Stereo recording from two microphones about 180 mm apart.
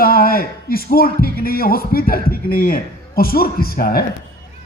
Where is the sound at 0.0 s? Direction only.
55° left (ahead or behind).